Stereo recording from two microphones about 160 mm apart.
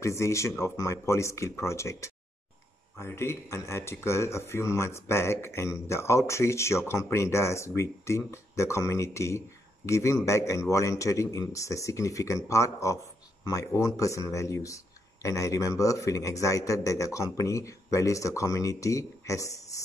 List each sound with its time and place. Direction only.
0.0 s a man's voice: 20° left (ahead or behind)